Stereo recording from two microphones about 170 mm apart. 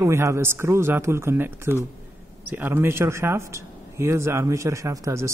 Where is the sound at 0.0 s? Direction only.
15° right (ahead or behind).